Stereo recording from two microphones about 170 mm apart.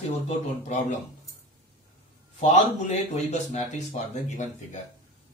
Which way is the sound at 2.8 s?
40° left (ahead or behind).